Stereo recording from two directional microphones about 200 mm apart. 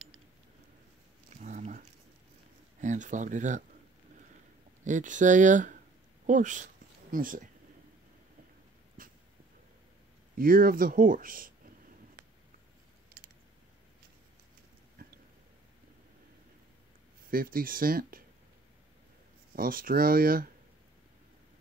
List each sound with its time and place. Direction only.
1.4 s dog: 40° right (ahead or behind)
2.8 s speech: 35° right (ahead or behind)
4.8 s speech: 40° right (ahead or behind)
6.2 s a sound: 40° right (ahead or behind)
9.0 s a sound: 45° right (ahead or behind)
10.3 s speech: 45° right (ahead or behind)
17.3 s speech: 45° right (ahead or behind)
19.5 s speech: 45° right (ahead or behind)